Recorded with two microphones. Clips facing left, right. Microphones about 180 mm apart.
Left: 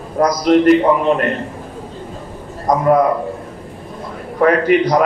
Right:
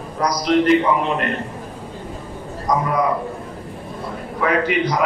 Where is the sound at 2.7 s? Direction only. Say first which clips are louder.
Left 4 dB; 50° left (ahead or behind).